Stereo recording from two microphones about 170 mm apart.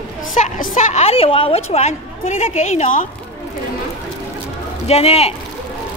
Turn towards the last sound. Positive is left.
turn(degrees=35)  # may be behind; listen again after turning